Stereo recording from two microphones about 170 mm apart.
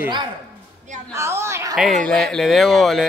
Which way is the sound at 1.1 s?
15° right (ahead or behind).